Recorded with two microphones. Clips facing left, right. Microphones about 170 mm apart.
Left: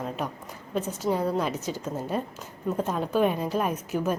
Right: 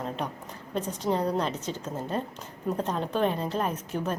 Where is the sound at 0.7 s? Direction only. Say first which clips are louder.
Left 1 dB; 5° left (ahead or behind).